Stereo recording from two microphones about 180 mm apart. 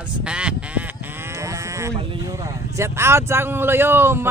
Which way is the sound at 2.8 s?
15° right (ahead or behind).